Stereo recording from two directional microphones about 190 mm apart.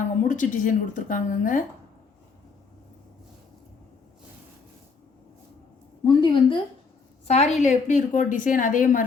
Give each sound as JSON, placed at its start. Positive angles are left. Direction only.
{"t": 0.0, "sound": "a woman's voice", "side_deg": 40}
{"t": 6.1, "sound": "a sound", "side_deg": 25}
{"t": 7.3, "sound": "a woman's voice", "side_deg": 35}